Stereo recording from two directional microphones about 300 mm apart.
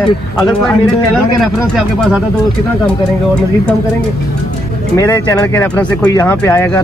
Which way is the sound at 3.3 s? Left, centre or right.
Centre.